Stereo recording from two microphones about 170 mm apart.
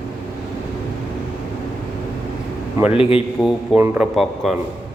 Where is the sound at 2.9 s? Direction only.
35° left (ahead or behind).